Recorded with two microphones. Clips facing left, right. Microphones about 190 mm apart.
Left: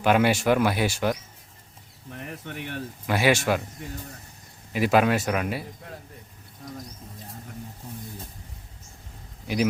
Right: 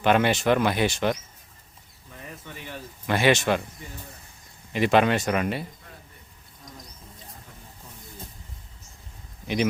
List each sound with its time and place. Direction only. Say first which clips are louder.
0.0 s speech: even; 10° left (ahead or behind)
2.0 s a sound: left 5 dB; 70° left (ahead or behind)
3.1 s speech: right 1 dB; 5° left (ahead or behind)
4.7 s speech: even; 5° left (ahead or behind)